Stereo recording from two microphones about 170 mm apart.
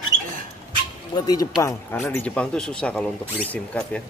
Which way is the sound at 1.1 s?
20° left (ahead or behind).